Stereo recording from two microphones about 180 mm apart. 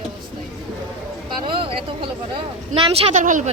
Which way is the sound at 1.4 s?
30° right (ahead or behind).